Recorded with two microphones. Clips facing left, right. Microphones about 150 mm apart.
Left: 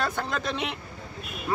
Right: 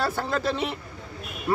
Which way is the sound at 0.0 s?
5° right (ahead or behind).